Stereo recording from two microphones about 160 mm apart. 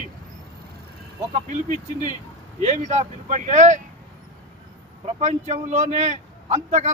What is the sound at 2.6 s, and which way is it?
A man's voice, 45° right (ahead or behind).